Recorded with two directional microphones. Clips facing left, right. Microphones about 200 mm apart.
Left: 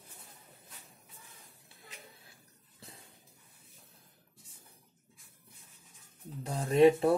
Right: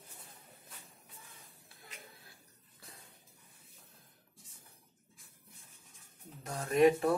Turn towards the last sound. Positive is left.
turn(degrees=30)  # may be behind; listen again after turning